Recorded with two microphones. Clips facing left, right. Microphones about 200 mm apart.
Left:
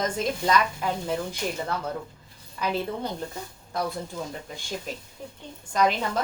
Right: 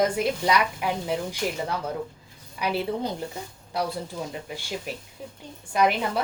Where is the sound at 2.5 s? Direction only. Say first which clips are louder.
Right 1 dB; 15° right (ahead or behind).